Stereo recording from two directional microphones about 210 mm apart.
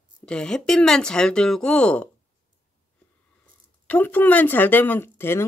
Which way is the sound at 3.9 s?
10° left (ahead or behind).